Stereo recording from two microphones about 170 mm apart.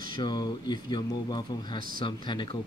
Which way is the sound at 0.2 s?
25° left (ahead or behind).